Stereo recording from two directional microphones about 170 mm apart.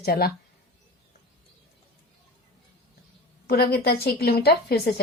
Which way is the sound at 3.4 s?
65° left (ahead or behind).